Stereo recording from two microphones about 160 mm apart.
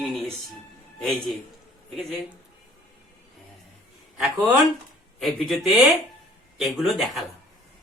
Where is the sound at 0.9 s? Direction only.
Centre (ahead or behind).